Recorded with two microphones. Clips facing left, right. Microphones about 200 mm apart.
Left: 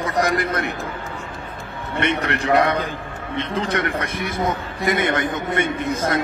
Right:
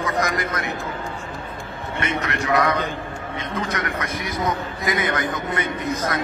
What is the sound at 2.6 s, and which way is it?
A man's voice, 30° left (ahead or behind).